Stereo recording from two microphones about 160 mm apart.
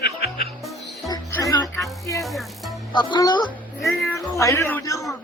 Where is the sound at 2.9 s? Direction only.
25° left (ahead or behind).